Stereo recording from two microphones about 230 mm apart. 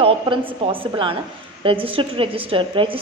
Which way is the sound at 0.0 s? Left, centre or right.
Right.